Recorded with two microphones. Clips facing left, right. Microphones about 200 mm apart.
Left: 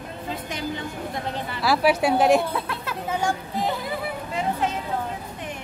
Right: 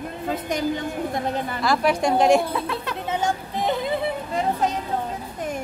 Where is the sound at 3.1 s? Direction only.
20° right (ahead or behind).